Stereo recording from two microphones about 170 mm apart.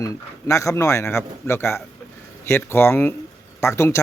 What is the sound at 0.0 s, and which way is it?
Speech, 20° left (ahead or behind).